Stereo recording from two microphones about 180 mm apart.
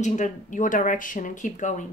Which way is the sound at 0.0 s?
40° left (ahead or behind).